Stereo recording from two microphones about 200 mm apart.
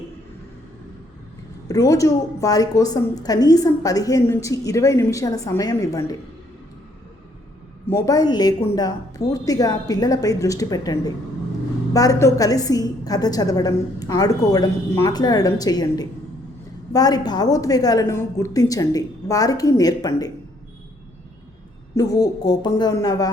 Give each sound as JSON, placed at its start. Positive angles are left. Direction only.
{"t": 1.6, "sound": "a woman's voice", "side_deg": 15}
{"t": 7.9, "sound": "a woman's voice", "side_deg": 20}
{"t": 21.9, "sound": "a woman's voice", "side_deg": 20}